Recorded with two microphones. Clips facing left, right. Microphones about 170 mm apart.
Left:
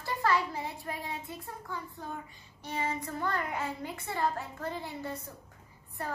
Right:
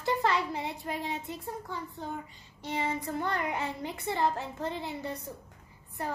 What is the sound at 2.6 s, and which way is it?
A child's voice, 20° right (ahead or behind).